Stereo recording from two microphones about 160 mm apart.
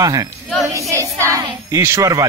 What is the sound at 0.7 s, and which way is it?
Child singing, 20° right (ahead or behind).